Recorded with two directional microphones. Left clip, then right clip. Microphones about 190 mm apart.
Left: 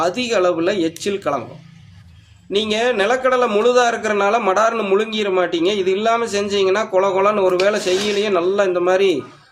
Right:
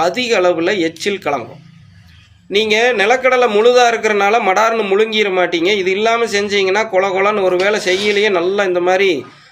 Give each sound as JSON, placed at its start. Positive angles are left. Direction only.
{"t": 0.0, "sound": "a man's voice", "side_deg": -5}
{"t": 2.5, "sound": "a man's voice", "side_deg": -5}